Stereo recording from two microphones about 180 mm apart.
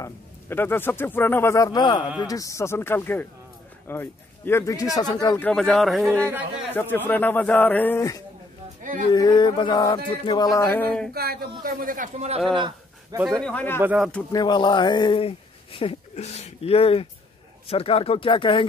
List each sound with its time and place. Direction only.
0.0 s a man's voice: 10° left (ahead or behind)
5.4 s a man's voice: 5° left (ahead or behind)
6.7 s a man's voice: 10° left (ahead or behind)
11.1 s a man's voice: 55° right (ahead or behind)
12.5 s a sound: 25° right (ahead or behind)
13.4 s a man's voice: 5° left (ahead or behind)
13.8 s a man's voice: centre (ahead or behind)
14.3 s speech: 25° left (ahead or behind)